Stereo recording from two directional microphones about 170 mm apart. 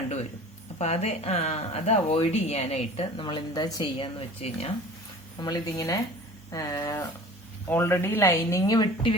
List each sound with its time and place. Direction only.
0.8 s speech: 40° left (ahead or behind)
5.4 s speech: 25° left (ahead or behind)